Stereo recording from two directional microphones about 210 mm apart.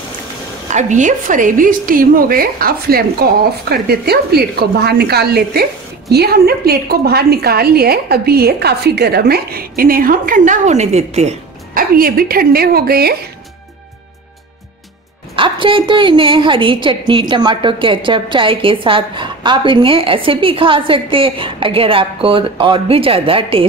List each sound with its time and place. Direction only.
0.7 s a woman's voice: 35° right (ahead or behind)
15.3 s a woman's voice: 25° right (ahead or behind)